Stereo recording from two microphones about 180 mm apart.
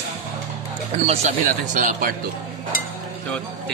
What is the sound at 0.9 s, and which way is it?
Speech, 35° right (ahead or behind).